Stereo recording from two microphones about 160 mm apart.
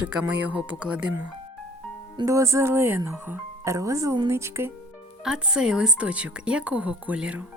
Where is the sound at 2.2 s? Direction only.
20° right (ahead or behind).